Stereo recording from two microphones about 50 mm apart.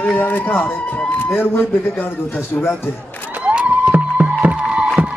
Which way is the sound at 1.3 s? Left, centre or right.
Left.